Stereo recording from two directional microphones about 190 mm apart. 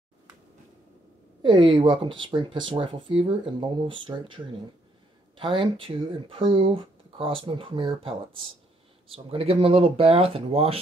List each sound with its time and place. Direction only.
1.4 s speech: 25° right (ahead or behind)
5.4 s speech: 25° right (ahead or behind)